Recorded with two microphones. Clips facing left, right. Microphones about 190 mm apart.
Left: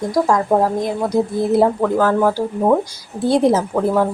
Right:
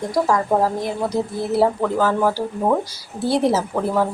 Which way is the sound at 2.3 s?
10° left (ahead or behind).